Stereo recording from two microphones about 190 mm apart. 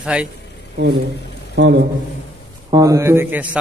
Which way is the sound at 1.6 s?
65° right (ahead or behind).